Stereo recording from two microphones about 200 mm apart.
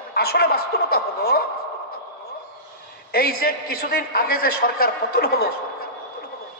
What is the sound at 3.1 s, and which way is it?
A man's voice, 45° left (ahead or behind).